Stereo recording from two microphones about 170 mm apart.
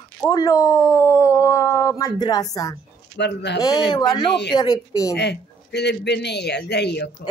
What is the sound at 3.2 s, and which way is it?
Speech, 90° left.